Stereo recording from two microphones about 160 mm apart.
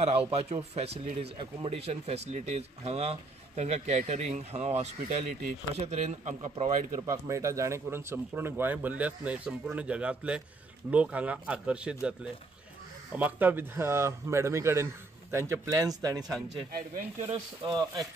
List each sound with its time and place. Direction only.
0.0 s speech: 40° right (ahead or behind)
6.9 s speech: 20° right (ahead or behind)
17.6 s speech: 25° right (ahead or behind)